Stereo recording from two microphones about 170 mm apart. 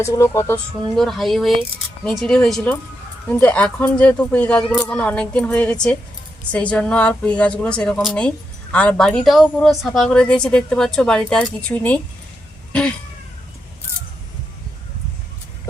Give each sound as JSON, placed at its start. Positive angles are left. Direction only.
{"t": 0.0, "sound": "speech", "side_deg": 15}
{"t": 0.9, "sound": "a woman's voice", "side_deg": 0}